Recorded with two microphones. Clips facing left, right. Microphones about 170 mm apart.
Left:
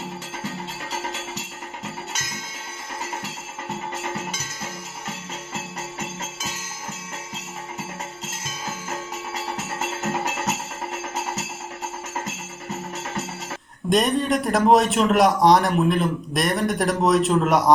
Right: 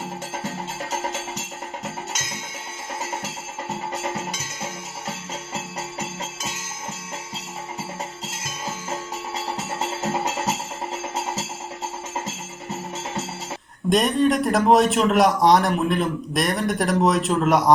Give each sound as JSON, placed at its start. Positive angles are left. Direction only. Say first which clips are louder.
{"t": 0.9, "sound": "music", "louder": "right 2 dB", "side_deg": -45}
{"t": 8.9, "sound": "music", "louder": "right 1 dB", "side_deg": -30}
{"t": 13.9, "sound": "a man's voice", "louder": "right 1 dB", "side_deg": 0}